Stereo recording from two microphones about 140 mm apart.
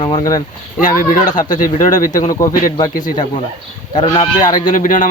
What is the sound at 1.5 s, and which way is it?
Speech, 70° left (ahead or behind).